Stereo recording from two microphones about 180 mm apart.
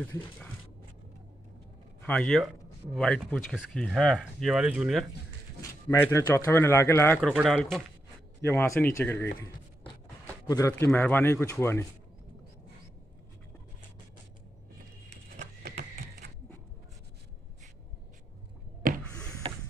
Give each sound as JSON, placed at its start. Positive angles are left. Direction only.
{"t": 0.0, "sound": "speech", "side_deg": 10}
{"t": 2.0, "sound": "speech", "side_deg": 5}
{"t": 5.6, "sound": "speech", "side_deg": 15}
{"t": 7.2, "sound": "speech", "side_deg": 0}
{"t": 15.6, "sound": "horse", "side_deg": -55}